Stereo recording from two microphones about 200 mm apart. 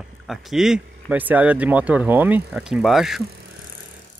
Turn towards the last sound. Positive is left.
turn(degrees=0)  # may be behind; listen again after turning